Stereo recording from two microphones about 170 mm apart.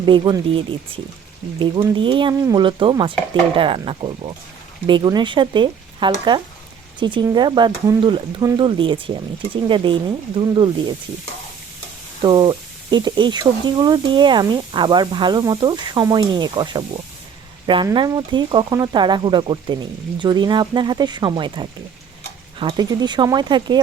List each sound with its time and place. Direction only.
0.0 s speech: 30° right (ahead or behind)
12.2 s speech: 25° right (ahead or behind)